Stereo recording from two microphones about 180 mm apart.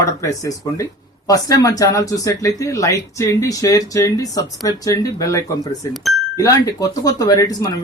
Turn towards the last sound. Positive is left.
turn(degrees=20)  # may be behind; listen again after turning